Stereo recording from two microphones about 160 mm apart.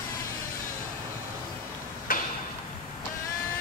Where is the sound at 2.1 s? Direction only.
65° left (ahead or behind).